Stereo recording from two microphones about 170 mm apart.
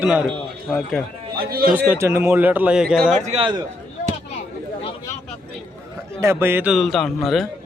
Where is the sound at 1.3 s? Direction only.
60° right (ahead or behind).